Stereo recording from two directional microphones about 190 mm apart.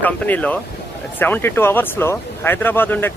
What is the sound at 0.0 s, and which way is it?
Speech, 10° left (ahead or behind).